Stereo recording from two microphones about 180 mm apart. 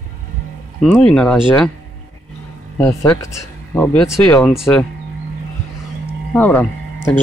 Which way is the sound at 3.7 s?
10° left (ahead or behind).